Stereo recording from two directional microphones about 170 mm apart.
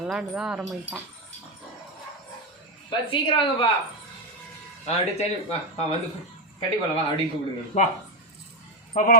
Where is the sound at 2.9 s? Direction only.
30° left (ahead or behind).